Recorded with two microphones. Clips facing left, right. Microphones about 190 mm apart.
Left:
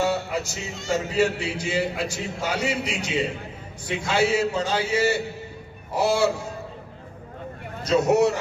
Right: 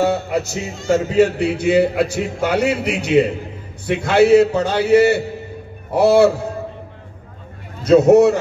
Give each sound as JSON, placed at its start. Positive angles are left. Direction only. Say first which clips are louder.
{"t": 0.0, "sound": "speech", "louder": "right 6 dB", "side_deg": -60}
{"t": 7.8, "sound": "speech", "louder": "right 9 dB", "side_deg": -55}